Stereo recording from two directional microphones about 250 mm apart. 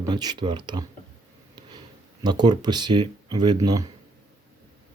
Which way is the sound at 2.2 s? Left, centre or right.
Centre.